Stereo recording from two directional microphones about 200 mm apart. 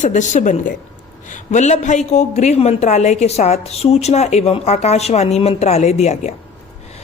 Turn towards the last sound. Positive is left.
turn(degrees=35)  # may be behind; listen again after turning